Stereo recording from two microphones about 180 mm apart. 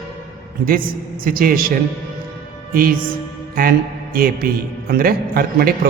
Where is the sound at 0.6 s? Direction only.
50° right (ahead or behind).